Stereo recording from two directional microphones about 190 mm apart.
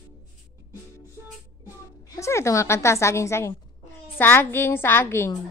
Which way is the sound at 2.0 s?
15° left (ahead or behind).